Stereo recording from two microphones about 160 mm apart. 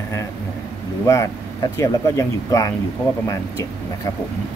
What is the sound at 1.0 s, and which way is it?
Speech, 20° left (ahead or behind).